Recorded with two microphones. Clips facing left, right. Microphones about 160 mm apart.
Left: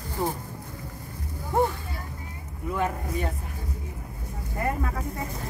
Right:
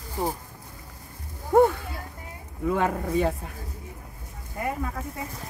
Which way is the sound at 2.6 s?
90° right.